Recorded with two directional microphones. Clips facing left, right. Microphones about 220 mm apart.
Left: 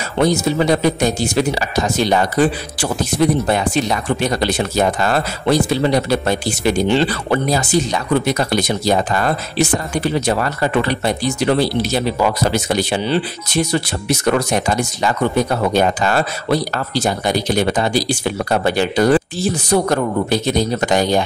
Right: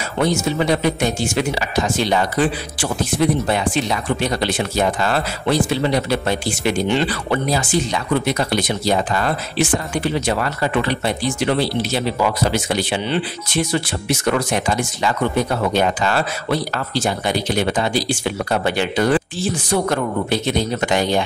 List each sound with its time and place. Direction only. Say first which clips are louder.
0.2 s speech: left 3 dB; 35° left (ahead or behind)